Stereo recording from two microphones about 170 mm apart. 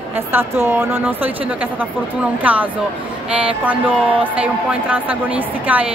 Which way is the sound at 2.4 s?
10° right (ahead or behind).